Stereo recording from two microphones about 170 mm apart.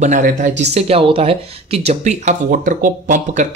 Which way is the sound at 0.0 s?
50° right (ahead or behind).